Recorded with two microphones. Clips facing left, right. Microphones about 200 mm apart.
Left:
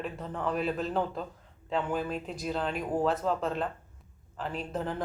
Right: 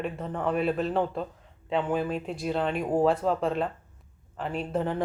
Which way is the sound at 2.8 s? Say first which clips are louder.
Right 5 dB; 30° right (ahead or behind).